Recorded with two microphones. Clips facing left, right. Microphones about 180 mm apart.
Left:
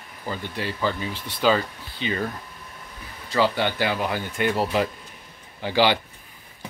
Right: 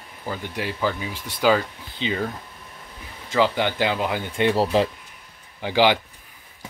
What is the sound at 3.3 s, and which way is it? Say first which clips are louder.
Speech: right 1 dB; 15° right (ahead or behind).